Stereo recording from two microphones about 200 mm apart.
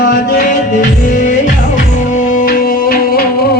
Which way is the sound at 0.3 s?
40° left (ahead or behind).